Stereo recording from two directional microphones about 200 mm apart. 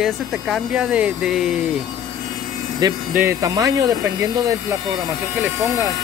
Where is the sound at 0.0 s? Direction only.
5° right (ahead or behind).